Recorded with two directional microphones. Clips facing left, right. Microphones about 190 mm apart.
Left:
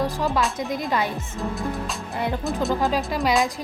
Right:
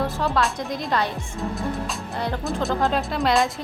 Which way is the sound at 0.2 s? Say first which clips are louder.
Even; centre (ahead or behind).